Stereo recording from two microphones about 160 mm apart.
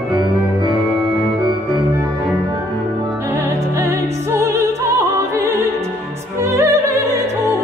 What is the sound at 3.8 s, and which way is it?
Music, 20° right (ahead or behind).